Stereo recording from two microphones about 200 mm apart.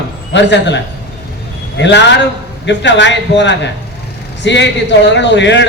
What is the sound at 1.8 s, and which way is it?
A man's voice, 60° left (ahead or behind).